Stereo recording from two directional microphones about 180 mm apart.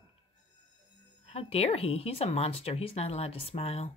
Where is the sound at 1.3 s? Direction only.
35° left (ahead or behind).